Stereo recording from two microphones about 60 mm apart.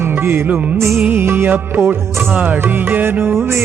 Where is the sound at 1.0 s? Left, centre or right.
Right.